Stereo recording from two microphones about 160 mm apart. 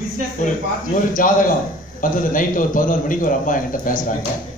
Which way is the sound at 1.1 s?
55° left (ahead or behind).